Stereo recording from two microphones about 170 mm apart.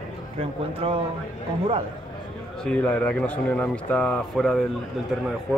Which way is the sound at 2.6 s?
10° left (ahead or behind).